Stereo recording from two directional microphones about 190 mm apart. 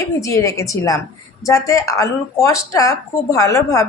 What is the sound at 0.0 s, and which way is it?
Speech, 15° left (ahead or behind).